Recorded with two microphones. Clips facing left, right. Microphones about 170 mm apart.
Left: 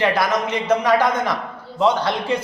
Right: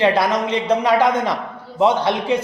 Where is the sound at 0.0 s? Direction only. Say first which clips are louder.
Right 2 dB; 30° right (ahead or behind).